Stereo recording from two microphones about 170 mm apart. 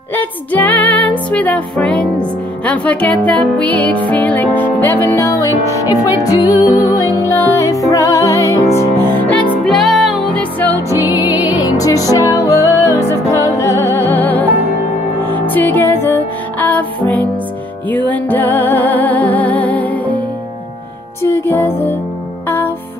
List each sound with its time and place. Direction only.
0.1 s music: 10° left (ahead or behind)
8.6 s music: 35° left (ahead or behind)
9.2 s music: 5° left (ahead or behind)
11.0 s music: 10° right (ahead or behind)
11.3 s music: 25° left (ahead or behind)
21.2 s music: 15° left (ahead or behind)